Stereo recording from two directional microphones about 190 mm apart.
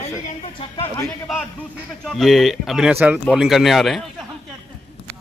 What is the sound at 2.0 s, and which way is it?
Speech, centre (ahead or behind).